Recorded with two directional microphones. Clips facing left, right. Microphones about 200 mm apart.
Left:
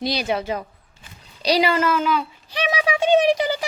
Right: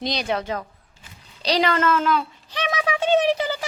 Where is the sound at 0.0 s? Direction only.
5° left (ahead or behind).